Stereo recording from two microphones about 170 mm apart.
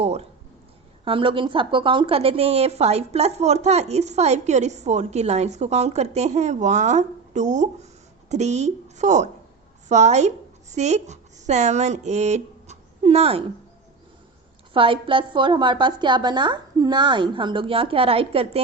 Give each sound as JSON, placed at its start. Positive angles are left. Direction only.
{"t": 0.0, "sound": "a sound", "side_deg": -40}
{"t": 1.0, "sound": "a woman's voice", "side_deg": -30}
{"t": 14.7, "sound": "a woman's voice", "side_deg": -30}